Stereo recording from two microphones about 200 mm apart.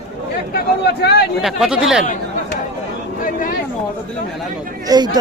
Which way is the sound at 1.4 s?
Centre (ahead or behind).